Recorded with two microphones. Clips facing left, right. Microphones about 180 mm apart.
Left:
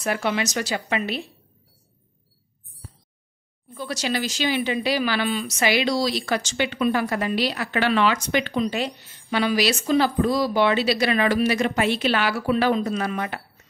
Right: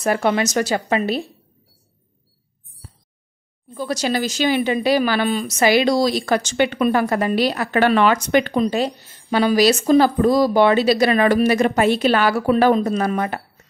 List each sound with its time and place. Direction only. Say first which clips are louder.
0.0 s speech: right 6 dB; 45° right (ahead or behind)
3.7 s speech: right 5 dB; 40° right (ahead or behind)